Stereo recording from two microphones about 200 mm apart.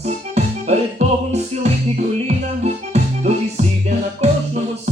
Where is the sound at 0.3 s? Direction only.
35° right (ahead or behind).